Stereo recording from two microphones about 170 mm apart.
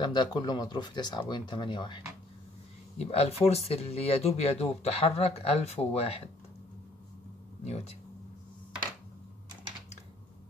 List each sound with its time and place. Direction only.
0.0 s speech: 25° left (ahead or behind)
3.0 s speech: 35° left (ahead or behind)
7.6 s speech: 40° left (ahead or behind)